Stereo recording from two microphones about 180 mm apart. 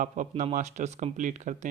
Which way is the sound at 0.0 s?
45° right (ahead or behind).